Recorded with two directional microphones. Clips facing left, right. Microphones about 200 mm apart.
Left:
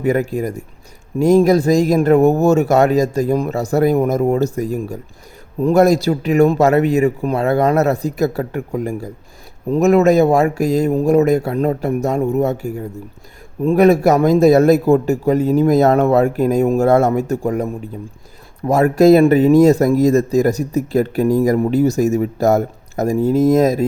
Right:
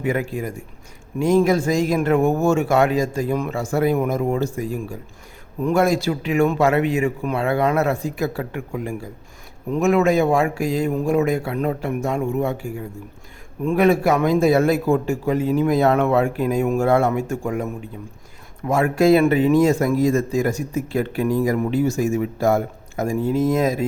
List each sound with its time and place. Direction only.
0.0 s speech: 40° left (ahead or behind)